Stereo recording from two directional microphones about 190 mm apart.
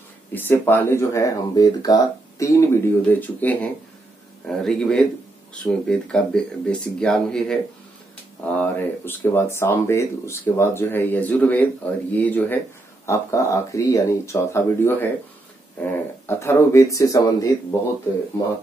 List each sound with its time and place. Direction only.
0.3 s speech: 10° left (ahead or behind)